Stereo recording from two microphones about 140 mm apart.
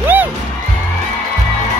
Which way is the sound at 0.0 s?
15° right (ahead or behind).